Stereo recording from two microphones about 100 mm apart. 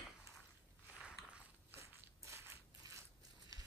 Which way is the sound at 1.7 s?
30° right (ahead or behind).